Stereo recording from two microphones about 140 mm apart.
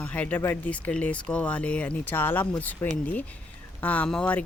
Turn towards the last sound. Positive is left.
turn(degrees=10)  # may be behind; listen again after turning